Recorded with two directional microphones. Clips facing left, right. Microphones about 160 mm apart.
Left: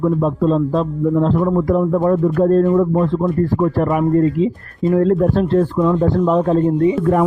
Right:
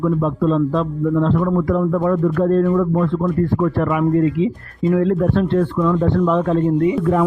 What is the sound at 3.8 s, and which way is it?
Speech, 40° left (ahead or behind).